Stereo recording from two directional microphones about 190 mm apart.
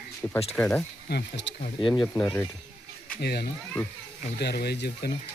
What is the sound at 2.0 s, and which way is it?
Speech, 10° left (ahead or behind).